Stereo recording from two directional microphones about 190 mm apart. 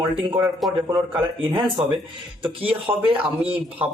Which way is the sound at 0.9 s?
10° right (ahead or behind).